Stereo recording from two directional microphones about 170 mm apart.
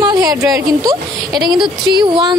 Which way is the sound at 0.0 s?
20° right (ahead or behind).